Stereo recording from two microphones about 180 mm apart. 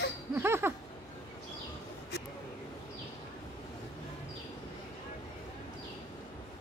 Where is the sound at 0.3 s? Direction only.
15° right (ahead or behind).